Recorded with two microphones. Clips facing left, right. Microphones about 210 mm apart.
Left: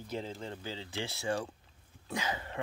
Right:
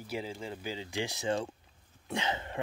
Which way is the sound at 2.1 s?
25° right (ahead or behind).